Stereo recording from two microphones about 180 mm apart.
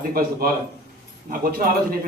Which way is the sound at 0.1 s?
55° right (ahead or behind).